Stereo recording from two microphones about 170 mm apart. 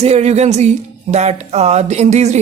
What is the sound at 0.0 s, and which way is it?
Music, 40° right (ahead or behind).